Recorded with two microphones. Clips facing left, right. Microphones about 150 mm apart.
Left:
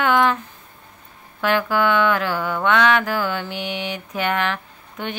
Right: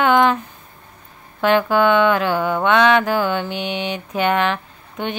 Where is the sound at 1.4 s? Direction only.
25° right (ahead or behind).